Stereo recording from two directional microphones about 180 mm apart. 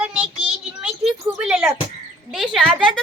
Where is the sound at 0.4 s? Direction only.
5° right (ahead or behind).